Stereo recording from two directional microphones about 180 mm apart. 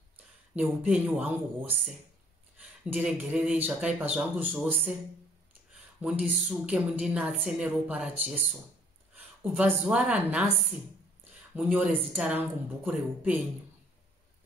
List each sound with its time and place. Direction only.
0.6 s a woman's voice: 5° right (ahead or behind)
2.9 s a woman's voice: 5° right (ahead or behind)
5.9 s a woman's voice: 5° right (ahead or behind)
11.5 s a woman's voice: 10° right (ahead or behind)